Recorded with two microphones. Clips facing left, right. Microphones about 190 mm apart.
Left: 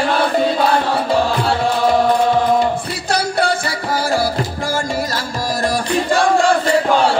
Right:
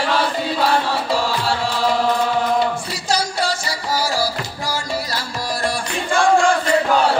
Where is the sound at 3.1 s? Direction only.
55° left (ahead or behind).